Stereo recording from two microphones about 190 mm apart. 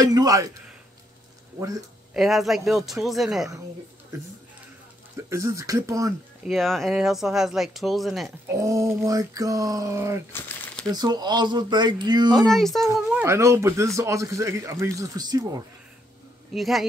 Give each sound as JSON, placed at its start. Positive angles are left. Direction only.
{"t": 0.0, "sound": "speech", "side_deg": -20}
{"t": 2.1, "sound": "speech", "side_deg": 0}
{"t": 5.1, "sound": "speech", "side_deg": -15}
{"t": 6.4, "sound": "speech", "side_deg": 0}
{"t": 8.5, "sound": "speech", "side_deg": -15}
{"t": 10.3, "sound": "crumpling", "side_deg": 10}
{"t": 10.9, "sound": "speech", "side_deg": -20}
{"t": 12.4, "sound": "speech", "side_deg": 0}
{"t": 13.2, "sound": "speech", "side_deg": -15}
{"t": 16.5, "sound": "speech", "side_deg": 0}